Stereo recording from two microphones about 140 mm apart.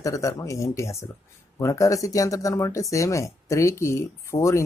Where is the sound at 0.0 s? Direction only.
25° left (ahead or behind).